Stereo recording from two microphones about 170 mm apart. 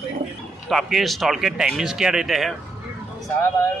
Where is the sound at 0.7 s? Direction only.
Centre (ahead or behind).